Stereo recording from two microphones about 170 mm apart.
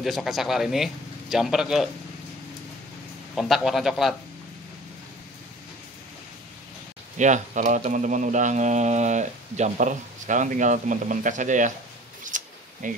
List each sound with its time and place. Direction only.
0.0 s speech: centre (ahead or behind)
3.3 s speech: centre (ahead or behind)
7.2 s speech: 45° right (ahead or behind)
12.2 s a sound: 50° right (ahead or behind)